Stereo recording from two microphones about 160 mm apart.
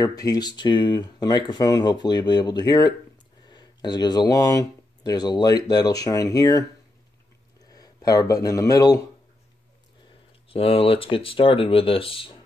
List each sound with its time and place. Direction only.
0.0 s speech: 20° left (ahead or behind)
7.7 s speech: 25° left (ahead or behind)
10.5 s speech: 35° left (ahead or behind)